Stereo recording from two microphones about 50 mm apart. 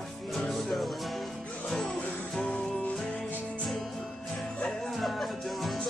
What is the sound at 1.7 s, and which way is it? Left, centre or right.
Music, centre.